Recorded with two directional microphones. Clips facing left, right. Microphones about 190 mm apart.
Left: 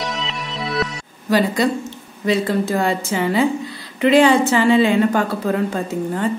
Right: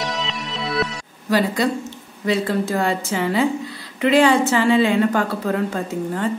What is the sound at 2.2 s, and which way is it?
A woman's voice, 20° left (ahead or behind).